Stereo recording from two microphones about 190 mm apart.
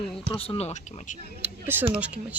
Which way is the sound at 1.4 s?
10° right (ahead or behind).